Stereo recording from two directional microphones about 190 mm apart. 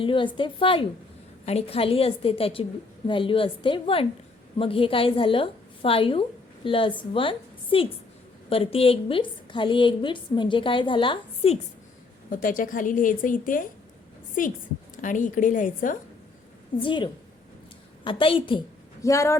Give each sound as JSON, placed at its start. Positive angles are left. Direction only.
{"t": 0.0, "sound": "a woman's voice", "side_deg": 25}
{"t": 12.3, "sound": "a woman's voice", "side_deg": 45}
{"t": 15.0, "sound": "a woman's voice", "side_deg": 40}
{"t": 16.8, "sound": "a woman's voice", "side_deg": 25}
{"t": 19.0, "sound": "speech", "side_deg": 15}